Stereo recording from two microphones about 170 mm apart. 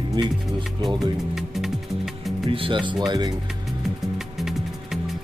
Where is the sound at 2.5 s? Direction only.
30° right (ahead or behind).